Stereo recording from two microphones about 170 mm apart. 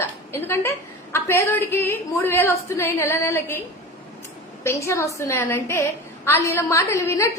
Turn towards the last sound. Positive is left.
turn(degrees=15)  # may be behind; listen again after turning